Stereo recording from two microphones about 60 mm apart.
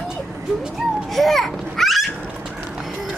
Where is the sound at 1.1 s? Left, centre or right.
Centre.